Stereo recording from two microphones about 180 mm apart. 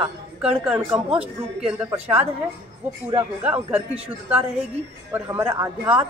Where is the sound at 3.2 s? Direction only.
10° right (ahead or behind).